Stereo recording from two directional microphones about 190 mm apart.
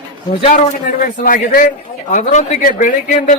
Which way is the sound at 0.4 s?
45° left (ahead or behind).